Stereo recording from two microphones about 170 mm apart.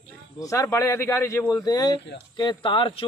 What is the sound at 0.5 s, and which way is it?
Speech, 15° left (ahead or behind).